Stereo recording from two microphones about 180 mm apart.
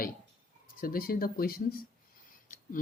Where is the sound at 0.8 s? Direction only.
50° left (ahead or behind).